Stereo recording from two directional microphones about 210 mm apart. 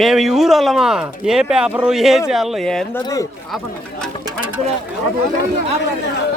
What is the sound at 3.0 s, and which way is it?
Speech, 15° left (ahead or behind).